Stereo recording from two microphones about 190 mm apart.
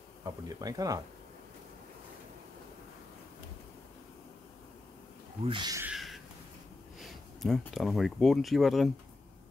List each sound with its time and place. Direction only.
0.2 s speech: 20° right (ahead or behind)
5.4 s speech: 25° right (ahead or behind)
5.9 s a sound: centre (ahead or behind)
7.0 s speech: centre (ahead or behind)